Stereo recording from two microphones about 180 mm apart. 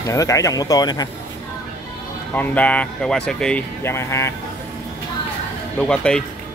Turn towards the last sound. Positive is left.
turn(degrees=5)  # may be behind; listen again after turning